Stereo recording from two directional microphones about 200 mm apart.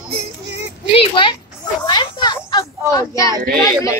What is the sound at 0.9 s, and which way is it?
Speech, 25° left (ahead or behind).